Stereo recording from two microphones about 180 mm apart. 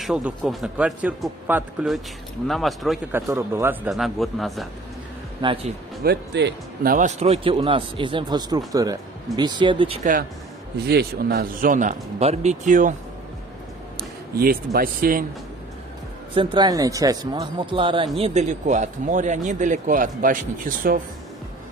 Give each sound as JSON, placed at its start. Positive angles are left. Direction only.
{"t": 0.0, "sound": "a man's voice", "side_deg": 0}
{"t": 3.1, "sound": "speech", "side_deg": -15}
{"t": 3.9, "sound": "a man's voice", "side_deg": 0}
{"t": 5.4, "sound": "speech", "side_deg": -30}
{"t": 6.0, "sound": "speech", "side_deg": -65}
{"t": 7.2, "sound": "speech", "side_deg": -35}
{"t": 10.9, "sound": "speech", "side_deg": -60}
{"t": 14.3, "sound": "speech", "side_deg": -55}
{"t": 16.3, "sound": "speech", "side_deg": -25}
{"t": 18.2, "sound": "speech", "side_deg": -40}